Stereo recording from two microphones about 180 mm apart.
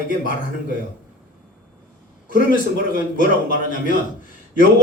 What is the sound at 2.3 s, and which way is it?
A man's voice, 50° left (ahead or behind).